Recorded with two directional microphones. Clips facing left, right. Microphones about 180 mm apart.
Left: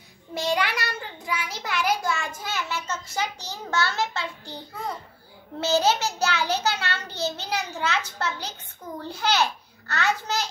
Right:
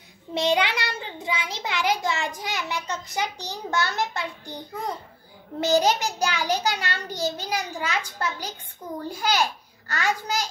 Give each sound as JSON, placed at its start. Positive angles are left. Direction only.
{"t": 0.3, "sound": "a child's voice", "side_deg": -20}